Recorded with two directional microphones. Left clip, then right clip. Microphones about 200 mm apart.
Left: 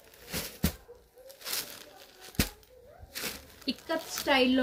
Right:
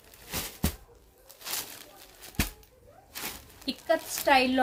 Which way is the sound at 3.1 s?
Centre (ahead or behind).